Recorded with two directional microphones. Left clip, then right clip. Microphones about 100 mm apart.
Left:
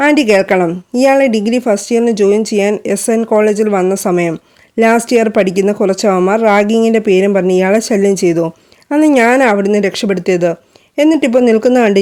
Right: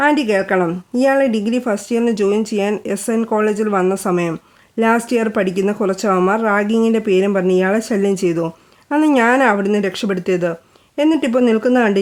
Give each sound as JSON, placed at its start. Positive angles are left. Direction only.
{"t": 0.0, "sound": "a woman's voice", "side_deg": 50}